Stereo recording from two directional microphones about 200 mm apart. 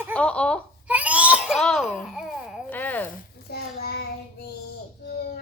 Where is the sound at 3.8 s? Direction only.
50° left (ahead or behind).